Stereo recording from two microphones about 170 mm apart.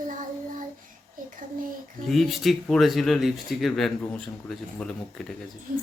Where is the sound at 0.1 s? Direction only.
50° right (ahead or behind).